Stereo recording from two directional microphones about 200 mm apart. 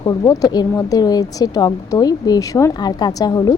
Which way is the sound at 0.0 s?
20° left (ahead or behind).